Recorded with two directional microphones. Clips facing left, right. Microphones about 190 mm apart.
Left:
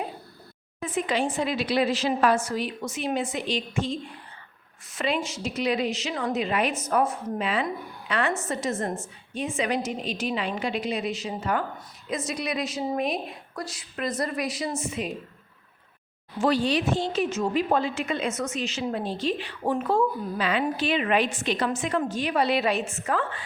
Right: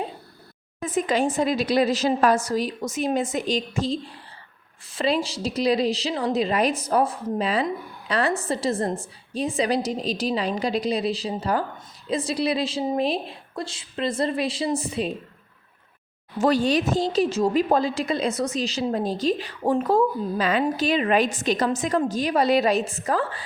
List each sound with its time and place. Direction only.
0.8 s a woman's voice: 45° right (ahead or behind)
16.4 s a woman's voice: 45° right (ahead or behind)